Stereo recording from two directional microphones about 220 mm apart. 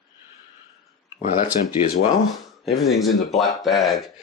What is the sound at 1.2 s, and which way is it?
Speech, 35° left (ahead or behind).